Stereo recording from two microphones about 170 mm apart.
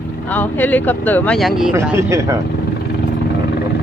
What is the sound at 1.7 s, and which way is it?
Speech, 15° right (ahead or behind).